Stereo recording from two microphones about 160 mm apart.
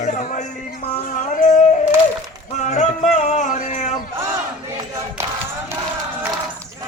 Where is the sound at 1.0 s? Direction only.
55° left (ahead or behind).